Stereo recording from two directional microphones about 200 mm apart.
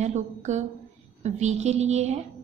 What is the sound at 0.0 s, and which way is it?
A woman's voice, 35° right (ahead or behind).